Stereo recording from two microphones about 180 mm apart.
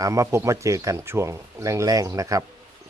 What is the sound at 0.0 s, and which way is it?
Speech, 15° right (ahead or behind).